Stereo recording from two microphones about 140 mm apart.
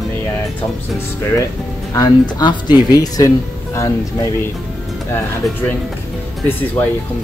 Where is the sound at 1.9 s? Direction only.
30° left (ahead or behind).